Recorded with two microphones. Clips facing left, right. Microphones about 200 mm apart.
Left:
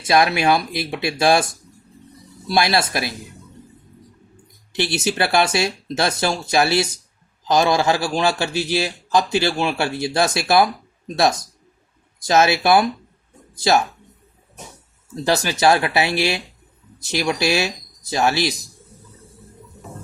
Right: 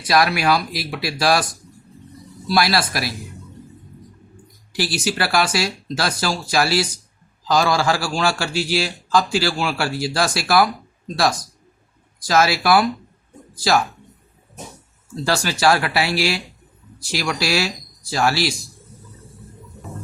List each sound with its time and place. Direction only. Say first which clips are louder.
0.0 s a man's voice: left 1 dB; 25° left (ahead or behind)
4.7 s a man's voice: left 1 dB; 25° left (ahead or behind)
15.1 s a man's voice: left 2 dB; 20° left (ahead or behind)